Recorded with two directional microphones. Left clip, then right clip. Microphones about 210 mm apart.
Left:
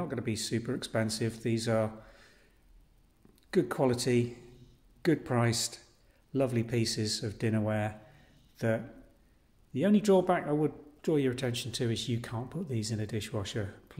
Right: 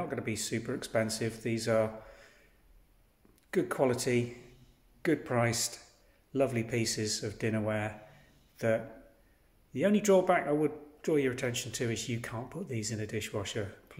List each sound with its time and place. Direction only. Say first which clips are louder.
0.0 s a man's voice: even; 20° left (ahead or behind)
3.4 s a man's voice: left 1 dB; 20° left (ahead or behind)